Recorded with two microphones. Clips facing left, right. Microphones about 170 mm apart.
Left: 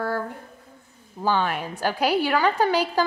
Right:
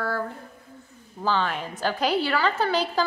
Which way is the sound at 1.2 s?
10° left (ahead or behind).